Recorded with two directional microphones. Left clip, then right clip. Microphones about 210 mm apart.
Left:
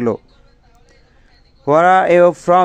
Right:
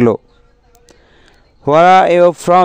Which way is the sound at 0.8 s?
45° right (ahead or behind).